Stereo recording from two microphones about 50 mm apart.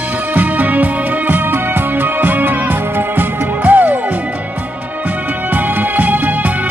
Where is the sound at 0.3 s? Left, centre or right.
Right.